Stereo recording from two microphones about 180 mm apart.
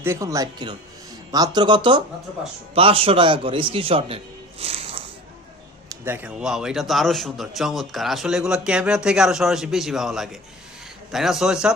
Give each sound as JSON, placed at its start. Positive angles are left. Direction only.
{"t": 0.0, "sound": "a man's voice", "side_deg": -15}
{"t": 4.6, "sound": "snake", "side_deg": -35}
{"t": 5.9, "sound": "a man's voice", "side_deg": -10}